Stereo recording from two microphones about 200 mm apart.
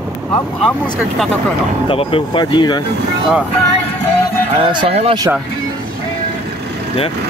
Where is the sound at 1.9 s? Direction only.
25° left (ahead or behind).